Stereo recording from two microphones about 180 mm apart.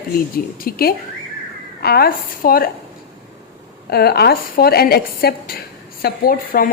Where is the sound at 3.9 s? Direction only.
60° left (ahead or behind).